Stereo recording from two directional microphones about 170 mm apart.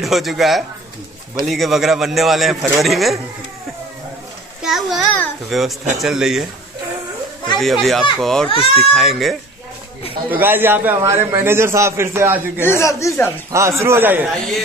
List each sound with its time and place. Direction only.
0.0 s a man's voice: centre (ahead or behind)
4.6 s a man's voice: centre (ahead or behind)
7.5 s a man's voice: centre (ahead or behind)
10.3 s a man's voice: 10° right (ahead or behind)
12.6 s speech: 15° left (ahead or behind)
13.5 s a man's voice: 15° right (ahead or behind)